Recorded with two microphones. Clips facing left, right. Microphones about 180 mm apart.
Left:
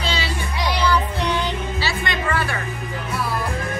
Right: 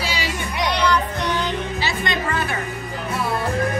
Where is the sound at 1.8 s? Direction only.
20° right (ahead or behind).